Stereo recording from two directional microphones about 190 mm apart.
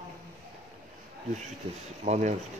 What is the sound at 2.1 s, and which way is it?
Speech, 40° right (ahead or behind).